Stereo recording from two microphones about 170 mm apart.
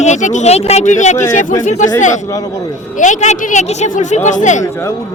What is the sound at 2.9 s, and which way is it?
Speech, 45° left (ahead or behind).